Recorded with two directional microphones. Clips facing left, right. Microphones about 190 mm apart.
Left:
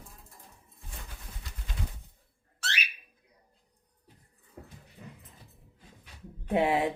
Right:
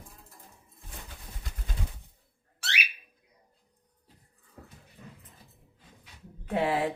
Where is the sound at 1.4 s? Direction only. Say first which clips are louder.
Right 3 dB; 50° right (ahead or behind).